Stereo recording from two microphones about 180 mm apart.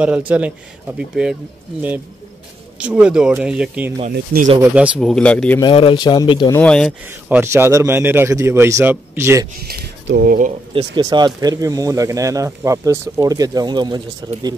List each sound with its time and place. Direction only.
0.3 s a man's voice: 10° right (ahead or behind)
2.8 s speech: 5° right (ahead or behind)
4.1 s speech: 55° right (ahead or behind)
4.7 s speech: 5° right (ahead or behind)
5.6 s speech: 30° left (ahead or behind)
6.5 s speech: 5° left (ahead or behind)
7.2 s a man's voice: 10° right (ahead or behind)
9.6 s speech: 60° right (ahead or behind)
10.7 s speech: 25° right (ahead or behind)